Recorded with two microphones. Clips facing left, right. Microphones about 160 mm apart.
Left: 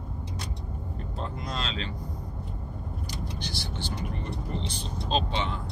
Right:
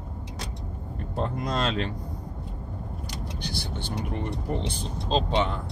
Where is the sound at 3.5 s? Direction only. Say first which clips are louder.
Right 4 dB; 55° right (ahead or behind).